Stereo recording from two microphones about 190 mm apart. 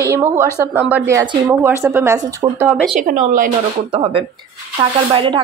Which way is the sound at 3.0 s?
45° right (ahead or behind).